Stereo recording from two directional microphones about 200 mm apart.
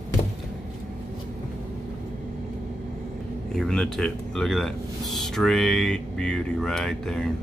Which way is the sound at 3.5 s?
Centre (ahead or behind).